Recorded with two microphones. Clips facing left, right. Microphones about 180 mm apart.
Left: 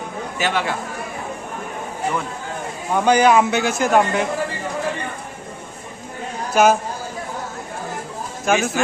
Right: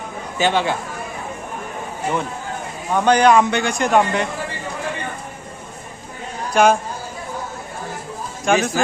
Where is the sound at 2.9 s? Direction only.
10° left (ahead or behind).